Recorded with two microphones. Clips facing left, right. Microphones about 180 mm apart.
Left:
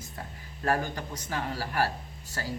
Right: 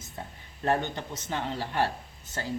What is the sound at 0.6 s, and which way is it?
Speech, 25° right (ahead or behind).